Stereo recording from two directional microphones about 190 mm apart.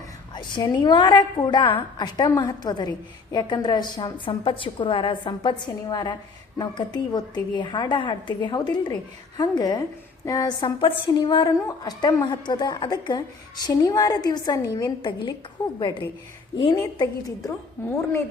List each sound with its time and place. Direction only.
0.3 s a woman's voice: 20° left (ahead or behind)